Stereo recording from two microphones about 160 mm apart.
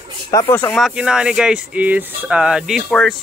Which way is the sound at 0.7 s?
5° right (ahead or behind).